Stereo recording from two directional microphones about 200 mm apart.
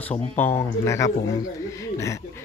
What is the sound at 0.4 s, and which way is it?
Speech, 10° left (ahead or behind).